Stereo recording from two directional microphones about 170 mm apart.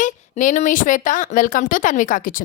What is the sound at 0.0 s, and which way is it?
Speech, 50° left (ahead or behind).